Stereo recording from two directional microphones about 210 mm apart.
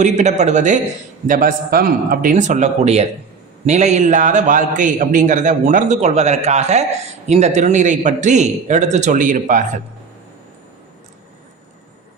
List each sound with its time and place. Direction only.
0.0 s a man's voice: 35° right (ahead or behind)